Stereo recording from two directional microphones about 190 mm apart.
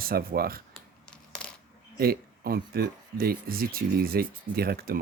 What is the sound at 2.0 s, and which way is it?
Speech, 50° right (ahead or behind).